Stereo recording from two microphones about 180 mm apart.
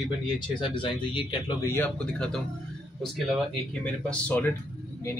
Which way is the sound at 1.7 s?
5° left (ahead or behind).